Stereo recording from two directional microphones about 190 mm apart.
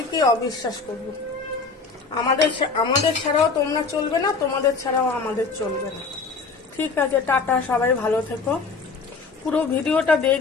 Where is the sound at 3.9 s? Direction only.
20° left (ahead or behind).